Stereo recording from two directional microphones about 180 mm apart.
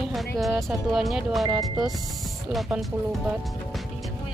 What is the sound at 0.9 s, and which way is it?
Speech, centre (ahead or behind).